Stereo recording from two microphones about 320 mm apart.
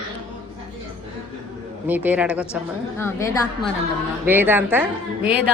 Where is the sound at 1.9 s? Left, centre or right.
Centre.